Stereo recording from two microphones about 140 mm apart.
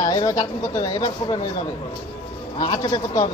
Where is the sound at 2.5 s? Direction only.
30° left (ahead or behind).